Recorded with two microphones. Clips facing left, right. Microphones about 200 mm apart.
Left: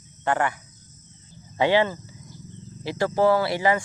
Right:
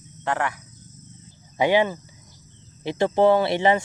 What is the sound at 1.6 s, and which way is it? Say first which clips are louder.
Speech: right 1 dB; 15° right (ahead or behind).